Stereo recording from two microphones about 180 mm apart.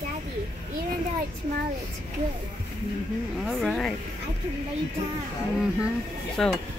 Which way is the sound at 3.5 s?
Centre (ahead or behind).